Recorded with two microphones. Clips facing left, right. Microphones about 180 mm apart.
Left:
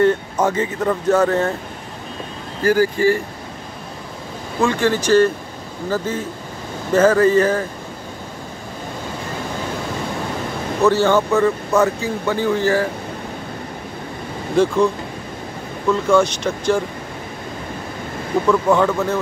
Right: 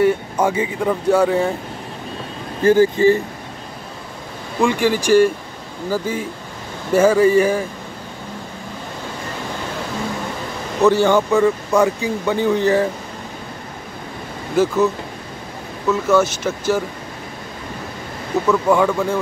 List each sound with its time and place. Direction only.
0.0 s speech: 10° right (ahead or behind)
2.6 s speech: 25° right (ahead or behind)
4.6 s speech: 15° right (ahead or behind)
10.8 s speech: 15° right (ahead or behind)
14.5 s speech: 5° right (ahead or behind)
15.9 s speech: 5° right (ahead or behind)
18.5 s speech: 10° right (ahead or behind)